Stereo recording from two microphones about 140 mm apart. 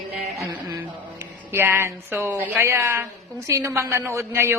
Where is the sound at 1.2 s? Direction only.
15° right (ahead or behind).